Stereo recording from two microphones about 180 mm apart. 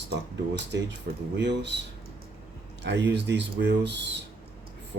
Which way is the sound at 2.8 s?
75° right (ahead or behind).